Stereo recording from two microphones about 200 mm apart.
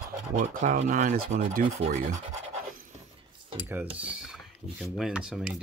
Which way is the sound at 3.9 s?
5° right (ahead or behind).